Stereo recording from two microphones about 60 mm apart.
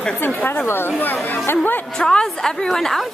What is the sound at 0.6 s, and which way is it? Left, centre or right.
Speech, left.